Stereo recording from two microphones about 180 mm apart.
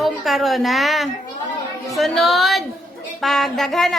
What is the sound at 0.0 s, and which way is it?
A woman's voice, centre (ahead or behind).